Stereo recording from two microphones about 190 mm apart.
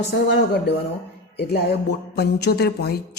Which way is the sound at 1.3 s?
60° left (ahead or behind).